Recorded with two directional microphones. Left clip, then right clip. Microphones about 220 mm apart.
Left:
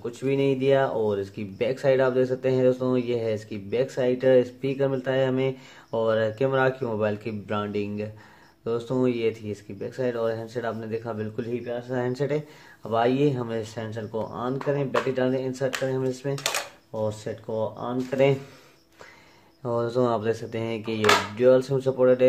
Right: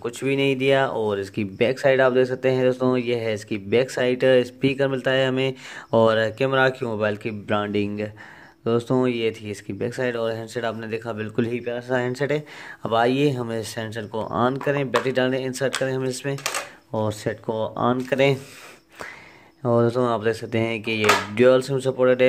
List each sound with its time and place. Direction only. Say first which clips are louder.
0.0 s speech: right 2 dB; 35° right (ahead or behind)
19.6 s speech: right 4 dB; 30° right (ahead or behind)